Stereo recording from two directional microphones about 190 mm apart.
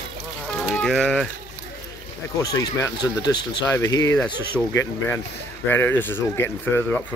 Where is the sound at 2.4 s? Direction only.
15° left (ahead or behind).